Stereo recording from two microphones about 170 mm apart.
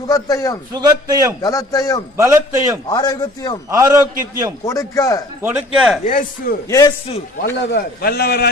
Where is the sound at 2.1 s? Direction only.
15° right (ahead or behind).